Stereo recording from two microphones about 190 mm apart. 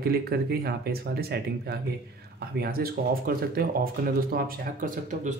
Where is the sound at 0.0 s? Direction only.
55° right (ahead or behind).